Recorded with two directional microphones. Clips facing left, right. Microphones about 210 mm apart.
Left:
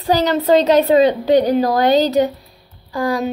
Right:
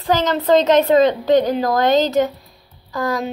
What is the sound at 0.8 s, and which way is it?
A woman's voice, 15° left (ahead or behind).